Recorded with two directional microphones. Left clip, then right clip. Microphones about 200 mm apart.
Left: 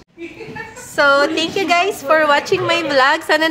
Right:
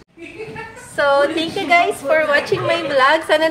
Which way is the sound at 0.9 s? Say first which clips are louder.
Left 2 dB; 30° left (ahead or behind).